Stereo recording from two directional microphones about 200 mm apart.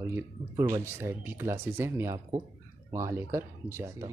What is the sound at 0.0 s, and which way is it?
Speech, 15° right (ahead or behind).